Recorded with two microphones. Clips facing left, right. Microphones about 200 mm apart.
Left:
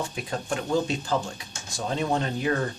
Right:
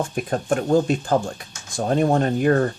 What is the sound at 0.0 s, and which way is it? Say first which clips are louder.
Speech: right 7 dB; 50° right (ahead or behind).